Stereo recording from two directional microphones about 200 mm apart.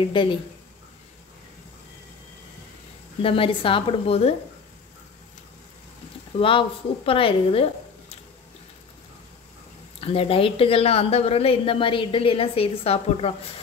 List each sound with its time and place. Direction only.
0.1 s a woman's voice: 25° left (ahead or behind)
3.2 s a woman's voice: 25° left (ahead or behind)
6.3 s a woman's voice: 25° left (ahead or behind)
9.9 s a woman's voice: 30° left (ahead or behind)